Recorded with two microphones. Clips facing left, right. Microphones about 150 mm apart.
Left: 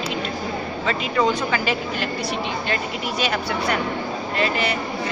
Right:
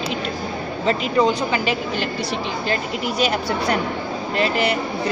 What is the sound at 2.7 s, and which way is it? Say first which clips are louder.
Speech: right 2 dB; 35° right (ahead or behind).